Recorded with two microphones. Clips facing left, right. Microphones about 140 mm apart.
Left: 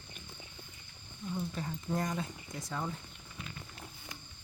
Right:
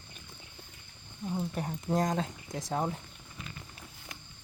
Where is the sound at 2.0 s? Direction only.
90° right.